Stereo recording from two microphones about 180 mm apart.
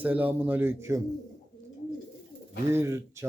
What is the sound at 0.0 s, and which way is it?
Speech, 10° right (ahead or behind).